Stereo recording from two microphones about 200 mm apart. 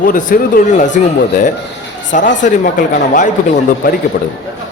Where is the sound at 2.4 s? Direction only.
40° left (ahead or behind).